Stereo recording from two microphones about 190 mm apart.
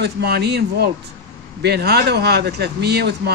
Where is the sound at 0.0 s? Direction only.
60° right (ahead or behind).